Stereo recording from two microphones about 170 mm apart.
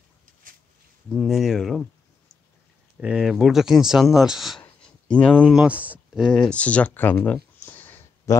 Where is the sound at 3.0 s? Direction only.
5° right (ahead or behind).